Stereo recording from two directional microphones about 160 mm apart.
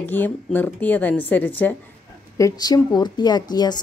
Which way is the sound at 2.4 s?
25° left (ahead or behind).